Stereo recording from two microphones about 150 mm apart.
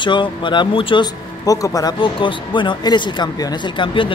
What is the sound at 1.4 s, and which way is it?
Speech, 25° left (ahead or behind).